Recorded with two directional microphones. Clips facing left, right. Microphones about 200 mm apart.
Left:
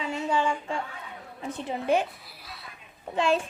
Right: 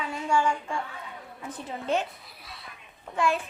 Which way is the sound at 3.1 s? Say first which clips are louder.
Left 2 dB; 25° left (ahead or behind).